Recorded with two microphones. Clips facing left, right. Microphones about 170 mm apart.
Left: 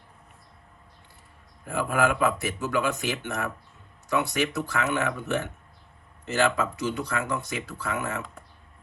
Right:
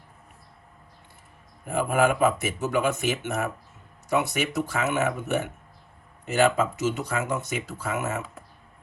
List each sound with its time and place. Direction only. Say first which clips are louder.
1.6 s speech: right 2 dB; 20° right (ahead or behind)
6.2 s speech: right 3 dB; 20° right (ahead or behind)